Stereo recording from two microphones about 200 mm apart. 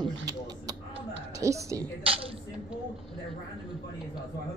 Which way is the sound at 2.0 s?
30° right (ahead or behind).